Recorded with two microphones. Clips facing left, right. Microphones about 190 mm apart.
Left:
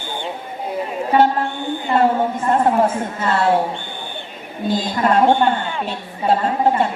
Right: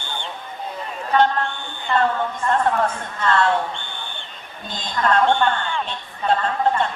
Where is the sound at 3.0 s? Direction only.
5° left (ahead or behind).